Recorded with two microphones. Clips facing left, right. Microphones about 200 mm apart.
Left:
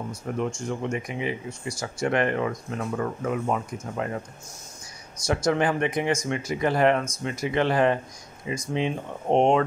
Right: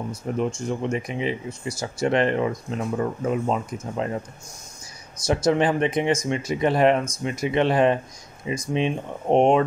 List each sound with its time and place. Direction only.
0.4 s speech: 20° right (ahead or behind)
5.2 s speech: 20° right (ahead or behind)